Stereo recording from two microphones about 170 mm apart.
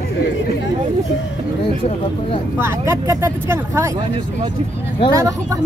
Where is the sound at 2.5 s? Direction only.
15° right (ahead or behind).